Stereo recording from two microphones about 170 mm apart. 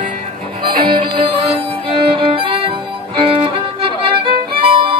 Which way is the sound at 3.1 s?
35° right (ahead or behind).